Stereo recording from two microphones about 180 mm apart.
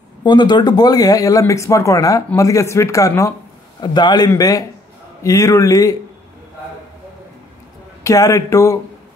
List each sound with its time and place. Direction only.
0.2 s a man's voice: 25° left (ahead or behind)
8.0 s speech: 15° left (ahead or behind)